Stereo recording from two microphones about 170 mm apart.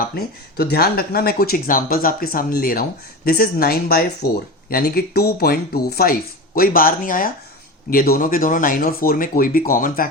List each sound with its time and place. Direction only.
0.0 s speech: 65° left (ahead or behind)